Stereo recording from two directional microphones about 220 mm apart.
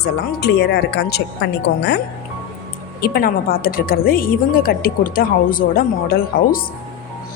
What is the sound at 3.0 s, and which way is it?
A woman's voice, 40° left (ahead or behind).